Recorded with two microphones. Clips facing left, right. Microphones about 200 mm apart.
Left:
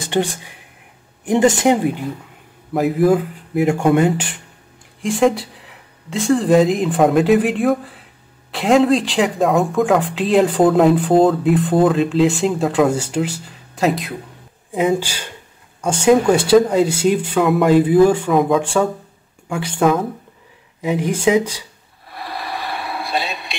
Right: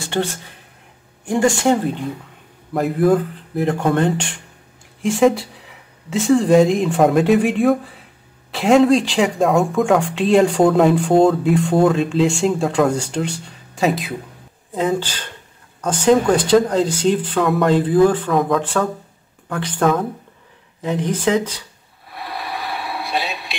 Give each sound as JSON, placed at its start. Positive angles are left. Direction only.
{"t": 0.0, "sound": "speech", "side_deg": 15}
{"t": 14.7, "sound": "speech", "side_deg": 10}
{"t": 22.1, "sound": "a sound", "side_deg": 0}